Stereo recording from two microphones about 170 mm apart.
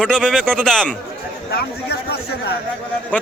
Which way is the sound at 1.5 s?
70° left (ahead or behind).